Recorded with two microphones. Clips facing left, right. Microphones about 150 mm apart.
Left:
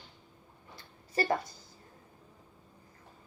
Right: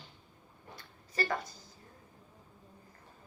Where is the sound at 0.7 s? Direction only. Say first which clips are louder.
Left 4 dB; 30° left (ahead or behind).